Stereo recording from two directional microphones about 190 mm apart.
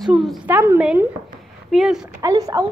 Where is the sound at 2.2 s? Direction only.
20° right (ahead or behind).